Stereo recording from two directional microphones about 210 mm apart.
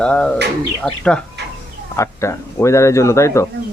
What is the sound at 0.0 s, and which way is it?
Speech, 5° left (ahead or behind).